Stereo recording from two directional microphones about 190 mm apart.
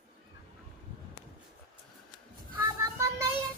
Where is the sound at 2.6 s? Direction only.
15° right (ahead or behind).